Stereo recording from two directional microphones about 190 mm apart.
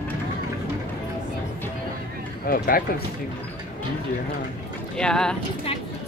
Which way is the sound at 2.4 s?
50° left (ahead or behind).